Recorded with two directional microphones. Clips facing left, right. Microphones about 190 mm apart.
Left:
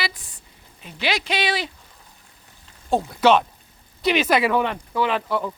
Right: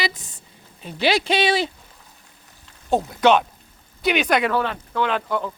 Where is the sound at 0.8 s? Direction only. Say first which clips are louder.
Right 5 dB; 30° right (ahead or behind).